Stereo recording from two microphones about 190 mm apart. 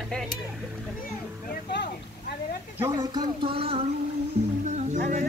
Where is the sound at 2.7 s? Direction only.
15° right (ahead or behind).